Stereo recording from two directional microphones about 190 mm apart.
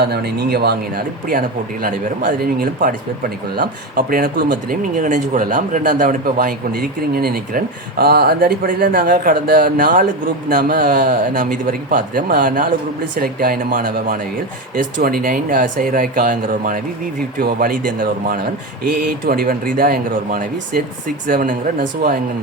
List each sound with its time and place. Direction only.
0.0 s speech: 60° right (ahead or behind)